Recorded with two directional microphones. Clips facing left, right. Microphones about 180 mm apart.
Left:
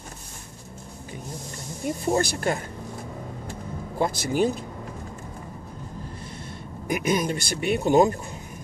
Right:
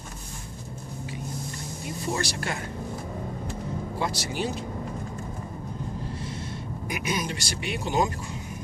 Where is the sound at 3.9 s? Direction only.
50° left (ahead or behind).